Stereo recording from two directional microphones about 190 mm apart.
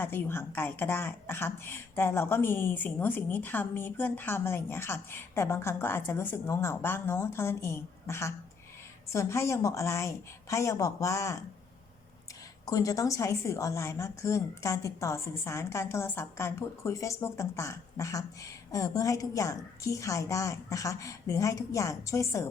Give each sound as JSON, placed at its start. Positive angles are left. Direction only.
{"t": 0.0, "sound": "a woman's voice", "side_deg": 10}
{"t": 12.6, "sound": "a woman's voice", "side_deg": 20}